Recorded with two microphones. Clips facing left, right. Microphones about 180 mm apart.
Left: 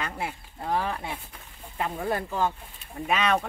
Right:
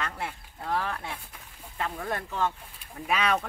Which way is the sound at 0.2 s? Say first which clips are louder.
Left 3 dB; 10° left (ahead or behind).